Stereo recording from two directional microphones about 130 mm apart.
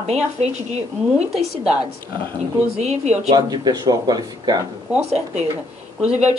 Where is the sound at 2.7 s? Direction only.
60° right (ahead or behind).